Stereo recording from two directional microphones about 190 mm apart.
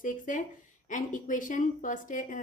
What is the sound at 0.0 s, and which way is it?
A woman's voice, 45° left (ahead or behind).